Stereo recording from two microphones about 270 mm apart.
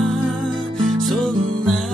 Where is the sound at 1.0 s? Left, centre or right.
Centre.